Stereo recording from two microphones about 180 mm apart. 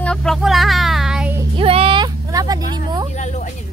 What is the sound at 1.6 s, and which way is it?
Speech, 30° right (ahead or behind).